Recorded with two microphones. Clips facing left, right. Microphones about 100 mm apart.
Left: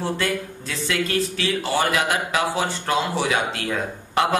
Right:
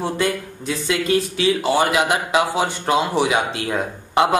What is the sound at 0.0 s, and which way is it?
Speech, 20° right (ahead or behind).